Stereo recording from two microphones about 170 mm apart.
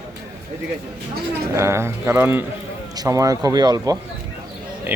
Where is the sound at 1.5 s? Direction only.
15° right (ahead or behind).